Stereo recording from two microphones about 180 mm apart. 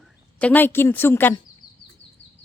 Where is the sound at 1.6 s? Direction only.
50° left (ahead or behind).